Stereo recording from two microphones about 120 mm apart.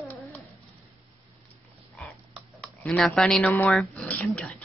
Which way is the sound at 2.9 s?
5° left (ahead or behind).